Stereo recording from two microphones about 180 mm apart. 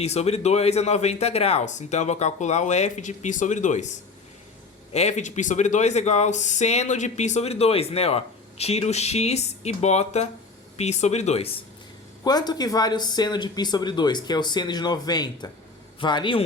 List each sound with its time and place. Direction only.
0.0 s speech: 35° left (ahead or behind)
4.9 s speech: 40° left (ahead or behind)
12.2 s speech: 20° left (ahead or behind)